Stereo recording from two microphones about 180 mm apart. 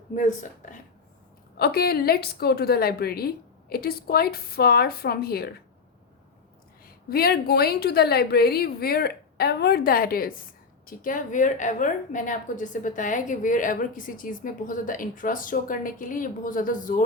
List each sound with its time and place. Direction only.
0.2 s a woman's voice: 45° left (ahead or behind)
1.5 s a woman's voice: 60° left (ahead or behind)
6.8 s a woman's voice: 55° left (ahead or behind)